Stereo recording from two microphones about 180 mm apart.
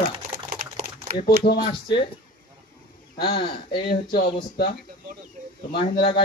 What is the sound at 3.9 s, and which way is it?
Speech, 55° left (ahead or behind).